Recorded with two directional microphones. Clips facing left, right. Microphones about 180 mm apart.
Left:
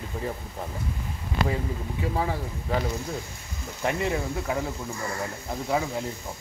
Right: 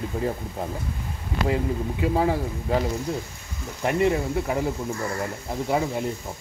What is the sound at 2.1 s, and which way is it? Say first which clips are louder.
Speech: right 6 dB; 35° right (ahead or behind).